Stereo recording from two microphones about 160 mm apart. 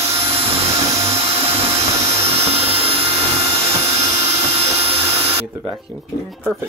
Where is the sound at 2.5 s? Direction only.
40° right (ahead or behind).